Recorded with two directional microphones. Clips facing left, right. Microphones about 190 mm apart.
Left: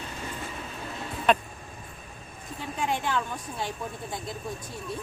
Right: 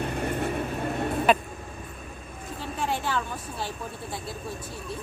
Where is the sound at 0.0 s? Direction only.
60° right (ahead or behind).